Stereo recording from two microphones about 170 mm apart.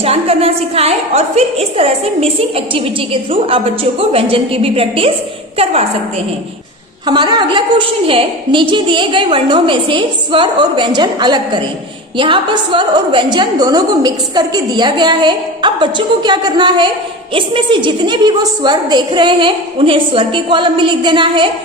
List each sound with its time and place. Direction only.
0.0 s a woman's voice: 35° right (ahead or behind)
7.1 s a woman's voice: 25° right (ahead or behind)